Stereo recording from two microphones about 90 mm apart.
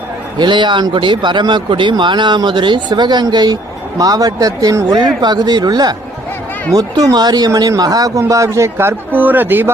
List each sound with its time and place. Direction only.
0.3 s a man's voice: 60° right (ahead or behind); by 9.7 s 25° right (ahead or behind)